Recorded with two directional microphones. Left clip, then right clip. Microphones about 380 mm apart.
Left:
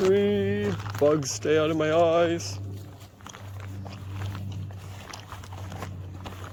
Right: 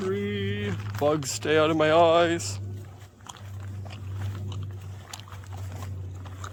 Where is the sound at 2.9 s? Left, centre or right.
Left.